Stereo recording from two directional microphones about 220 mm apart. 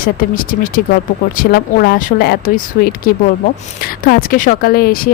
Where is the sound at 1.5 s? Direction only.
45° left (ahead or behind).